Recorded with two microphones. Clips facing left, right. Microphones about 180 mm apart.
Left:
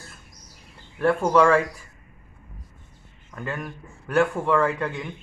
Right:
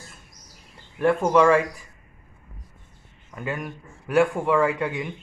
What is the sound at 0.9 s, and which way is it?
Speech, 15° right (ahead or behind).